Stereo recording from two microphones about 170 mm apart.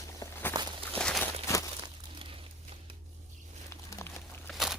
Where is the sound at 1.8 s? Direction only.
30° right (ahead or behind).